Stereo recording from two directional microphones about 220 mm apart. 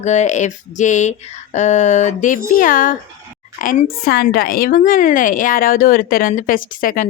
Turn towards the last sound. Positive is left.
turn(degrees=40)  # may be behind; listen again after turning